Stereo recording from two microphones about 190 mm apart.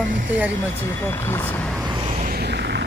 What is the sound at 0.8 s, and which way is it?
Speech, 15° left (ahead or behind).